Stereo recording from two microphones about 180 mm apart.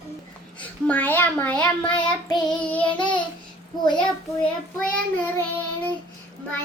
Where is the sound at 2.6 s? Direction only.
10° left (ahead or behind).